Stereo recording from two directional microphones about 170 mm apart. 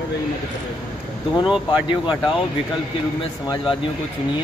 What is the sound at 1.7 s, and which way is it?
Speech, 25° left (ahead or behind).